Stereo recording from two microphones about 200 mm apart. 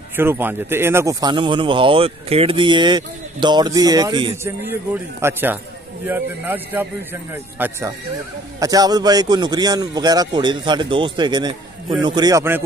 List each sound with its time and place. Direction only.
0.1 s speech: 10° right (ahead or behind)
4.9 s a man's voice: 10° right (ahead or behind)